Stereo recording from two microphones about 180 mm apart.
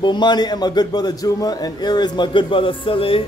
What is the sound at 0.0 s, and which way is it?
A man's voice, 25° left (ahead or behind).